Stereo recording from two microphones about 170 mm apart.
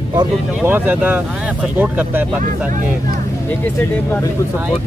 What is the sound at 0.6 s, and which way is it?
Speech, 10° right (ahead or behind).